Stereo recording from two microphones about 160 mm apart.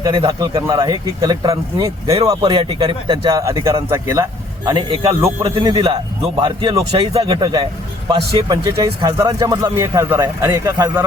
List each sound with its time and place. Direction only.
0.0 s speech: 25° right (ahead or behind)
7.3 s speech: 25° right (ahead or behind)